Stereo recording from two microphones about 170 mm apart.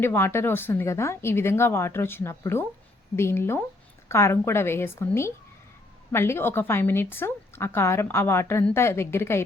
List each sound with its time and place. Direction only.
0.0 s a woman's voice: 15° left (ahead or behind)